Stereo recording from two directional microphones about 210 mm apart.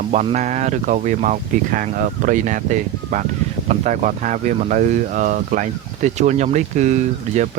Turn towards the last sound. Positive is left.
turn(degrees=-35)  # may be behind; listen again after turning